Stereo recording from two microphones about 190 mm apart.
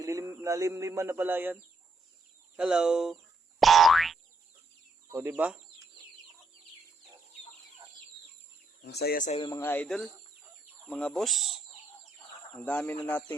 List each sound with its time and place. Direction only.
0.0 s speech: 15° right (ahead or behind)
2.6 s speech: 5° right (ahead or behind)
3.6 s boing: centre (ahead or behind)
5.1 s speech: 10° right (ahead or behind)
8.8 s speech: 60° left (ahead or behind); by 9.4 s 45° left (ahead or behind)
9.4 s speech: 20° left (ahead or behind)
9.6 s speech: 5° left (ahead or behind)